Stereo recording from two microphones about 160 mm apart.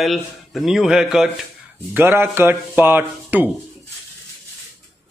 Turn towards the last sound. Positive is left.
turn(degrees=-10)  # may be behind; listen again after turning